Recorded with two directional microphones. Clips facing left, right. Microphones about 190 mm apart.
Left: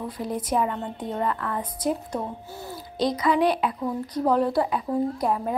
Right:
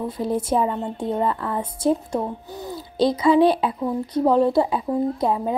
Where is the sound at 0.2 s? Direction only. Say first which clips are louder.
Right 4 dB; 30° right (ahead or behind).